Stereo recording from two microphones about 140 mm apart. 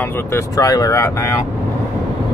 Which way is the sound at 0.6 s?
25° left (ahead or behind).